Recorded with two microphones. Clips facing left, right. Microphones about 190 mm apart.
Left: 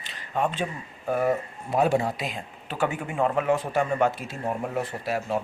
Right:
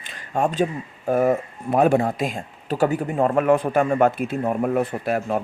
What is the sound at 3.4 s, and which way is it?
A man's voice, 55° right (ahead or behind).